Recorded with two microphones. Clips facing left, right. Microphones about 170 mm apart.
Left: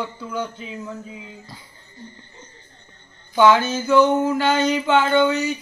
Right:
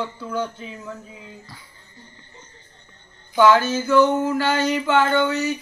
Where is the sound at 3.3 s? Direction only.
20° left (ahead or behind).